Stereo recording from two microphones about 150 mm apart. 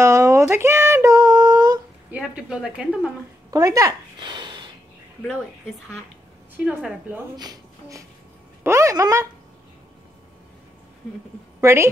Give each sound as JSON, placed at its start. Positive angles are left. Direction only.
{"t": 0.0, "sound": "a sound", "side_deg": -20}
{"t": 2.0, "sound": "a woman's voice", "side_deg": -10}
{"t": 3.4, "sound": "speech", "side_deg": -20}
{"t": 6.5, "sound": "a woman's voice", "side_deg": -10}
{"t": 7.3, "sound": "speech", "side_deg": -25}
{"t": 11.6, "sound": "a woman's voice", "side_deg": -20}